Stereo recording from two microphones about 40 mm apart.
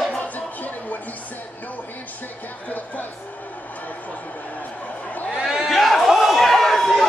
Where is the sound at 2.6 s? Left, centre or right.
Left.